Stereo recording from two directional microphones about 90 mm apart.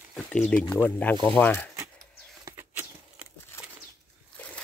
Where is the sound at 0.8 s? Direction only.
15° left (ahead or behind).